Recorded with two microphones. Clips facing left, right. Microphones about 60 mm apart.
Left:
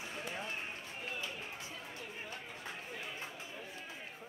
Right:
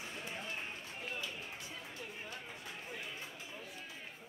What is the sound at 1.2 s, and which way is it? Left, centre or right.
Run, left.